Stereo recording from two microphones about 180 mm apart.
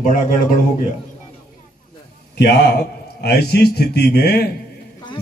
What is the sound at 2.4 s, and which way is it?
A man's voice, 65° left (ahead or behind).